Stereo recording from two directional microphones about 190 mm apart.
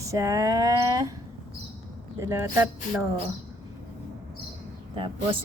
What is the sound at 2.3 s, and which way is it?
Speech, 15° right (ahead or behind).